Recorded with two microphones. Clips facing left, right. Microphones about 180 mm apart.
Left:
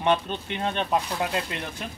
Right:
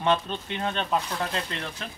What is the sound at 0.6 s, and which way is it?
A man's voice, 15° left (ahead or behind).